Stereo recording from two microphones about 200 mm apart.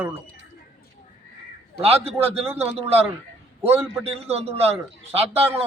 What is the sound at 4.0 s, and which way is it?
A man's voice, 30° right (ahead or behind).